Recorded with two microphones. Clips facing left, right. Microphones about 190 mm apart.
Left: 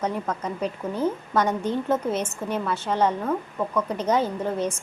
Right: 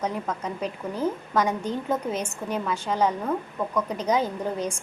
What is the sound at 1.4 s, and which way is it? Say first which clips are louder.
A woman's voice: left 2 dB; 10° right (ahead or behind).